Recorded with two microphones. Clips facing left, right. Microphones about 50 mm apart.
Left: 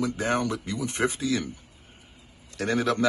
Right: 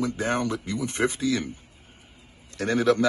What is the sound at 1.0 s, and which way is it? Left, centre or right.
Speech, left.